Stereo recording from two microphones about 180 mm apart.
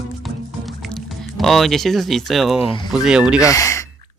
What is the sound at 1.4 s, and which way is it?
Speech, centre (ahead or behind).